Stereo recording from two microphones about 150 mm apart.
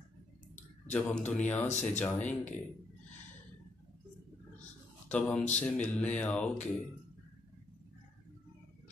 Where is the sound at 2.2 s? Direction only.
55° left (ahead or behind).